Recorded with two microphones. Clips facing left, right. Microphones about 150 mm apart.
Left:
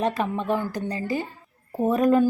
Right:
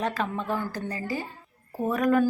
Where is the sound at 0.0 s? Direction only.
20° left (ahead or behind).